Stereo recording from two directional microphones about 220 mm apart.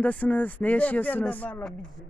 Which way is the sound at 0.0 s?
5° left (ahead or behind).